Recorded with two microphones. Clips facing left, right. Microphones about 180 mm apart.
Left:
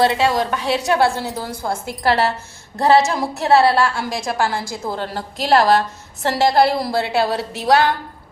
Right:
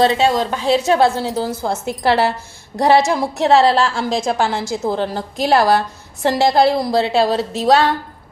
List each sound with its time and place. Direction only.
0.0 s a woman's voice: 25° right (ahead or behind)